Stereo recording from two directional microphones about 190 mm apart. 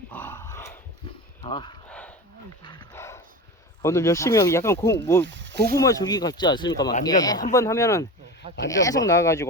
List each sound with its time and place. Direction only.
0.1 s dog: 10° left (ahead or behind)
1.5 s speech: 25° left (ahead or behind)
1.9 s dog: 5° left (ahead or behind)
3.8 s speech: 15° left (ahead or behind)
5.2 s snake: 70° right (ahead or behind)
5.7 s speech: 15° left (ahead or behind)